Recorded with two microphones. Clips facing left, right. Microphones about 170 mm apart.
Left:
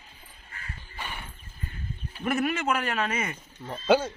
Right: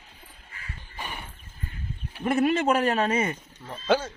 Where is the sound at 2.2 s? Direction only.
25° right (ahead or behind).